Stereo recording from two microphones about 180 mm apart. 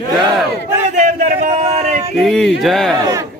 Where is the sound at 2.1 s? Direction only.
Centre (ahead or behind).